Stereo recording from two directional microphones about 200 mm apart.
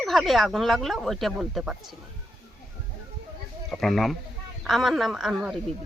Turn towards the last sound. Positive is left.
turn(degrees=0)  # may be behind; listen again after turning